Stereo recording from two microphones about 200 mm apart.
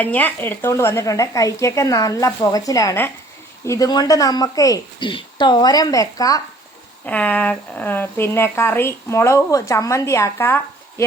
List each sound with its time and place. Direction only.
0.0 s a woman's voice: 10° left (ahead or behind)
7.0 s a woman's voice: 5° left (ahead or behind)